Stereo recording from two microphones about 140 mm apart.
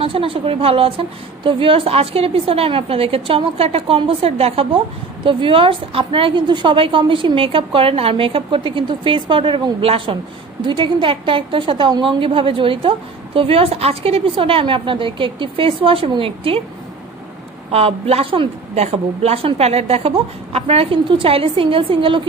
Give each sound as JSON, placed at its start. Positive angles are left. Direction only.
{"t": 0.0, "sound": "a woman's voice", "side_deg": -40}
{"t": 17.6, "sound": "a woman's voice", "side_deg": -45}